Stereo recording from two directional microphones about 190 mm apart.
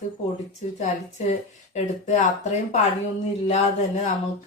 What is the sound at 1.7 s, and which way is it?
Speech, 40° left (ahead or behind).